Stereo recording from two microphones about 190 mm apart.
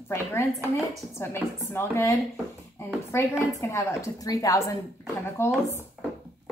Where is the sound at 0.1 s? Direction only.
15° left (ahead or behind).